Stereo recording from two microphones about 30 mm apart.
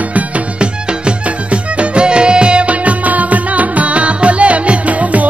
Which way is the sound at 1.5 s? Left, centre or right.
Right.